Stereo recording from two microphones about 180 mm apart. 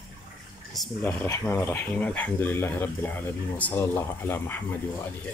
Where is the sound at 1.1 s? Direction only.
15° left (ahead or behind).